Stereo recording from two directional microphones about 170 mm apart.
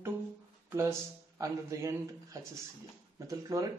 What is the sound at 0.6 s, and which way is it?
Speech, 15° right (ahead or behind).